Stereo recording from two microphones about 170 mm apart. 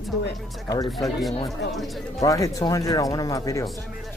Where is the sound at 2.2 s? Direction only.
20° left (ahead or behind).